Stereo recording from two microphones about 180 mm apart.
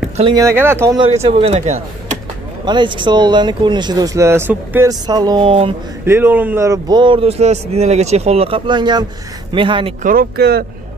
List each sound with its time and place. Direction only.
0.2 s speech: 20° right (ahead or behind)
0.9 s speech: 30° right (ahead or behind)
6.0 s speech: 10° right (ahead or behind); by 9.9 s 30° right (ahead or behind)
10.0 s speech: 60° right (ahead or behind)